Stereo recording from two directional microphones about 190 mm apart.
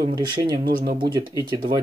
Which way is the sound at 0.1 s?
20° right (ahead or behind).